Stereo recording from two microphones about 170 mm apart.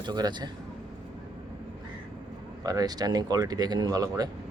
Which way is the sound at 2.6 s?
20° right (ahead or behind).